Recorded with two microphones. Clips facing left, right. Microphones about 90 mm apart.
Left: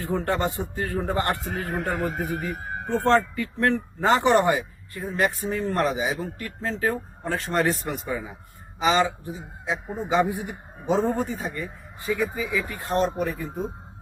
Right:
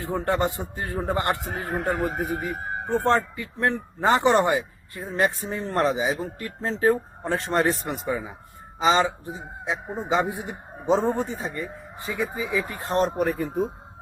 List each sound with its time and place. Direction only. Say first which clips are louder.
0.0 s a man's voice: right 1 dB; 20° right (ahead or behind)
13.1 s speech: right 3 dB; 50° right (ahead or behind)